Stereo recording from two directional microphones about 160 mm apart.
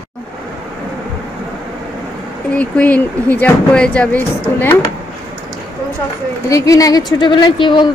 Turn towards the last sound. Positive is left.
turn(degrees=30)  # may be behind; listen again after turning